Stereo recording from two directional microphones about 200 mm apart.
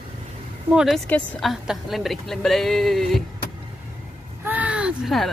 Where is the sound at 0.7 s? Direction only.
Centre (ahead or behind).